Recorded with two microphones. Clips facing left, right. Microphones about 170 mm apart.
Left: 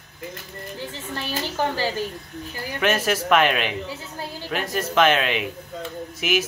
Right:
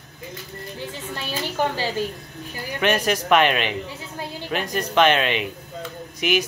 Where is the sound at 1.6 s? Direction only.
15° right (ahead or behind).